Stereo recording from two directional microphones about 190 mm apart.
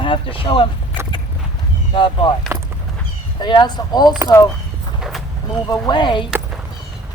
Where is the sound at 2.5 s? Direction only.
15° right (ahead or behind).